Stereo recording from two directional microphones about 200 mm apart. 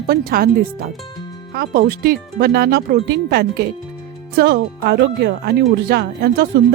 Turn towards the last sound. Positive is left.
turn(degrees=-50)  # may be behind; listen again after turning